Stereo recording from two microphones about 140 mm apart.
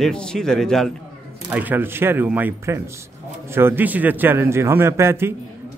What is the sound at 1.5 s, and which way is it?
A man's voice, 15° right (ahead or behind).